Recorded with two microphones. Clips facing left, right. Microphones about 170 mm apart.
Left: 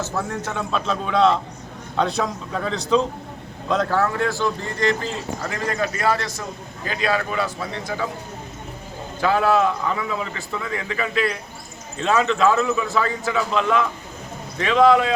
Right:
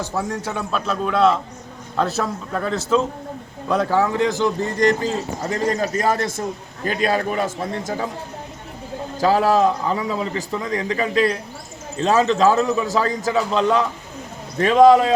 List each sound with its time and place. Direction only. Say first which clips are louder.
0.4 s a man's voice: even; 5° right (ahead or behind)
4.9 s a man's voice: right 4 dB; 40° right (ahead or behind)
9.2 s a man's voice: right 2 dB; 35° right (ahead or behind)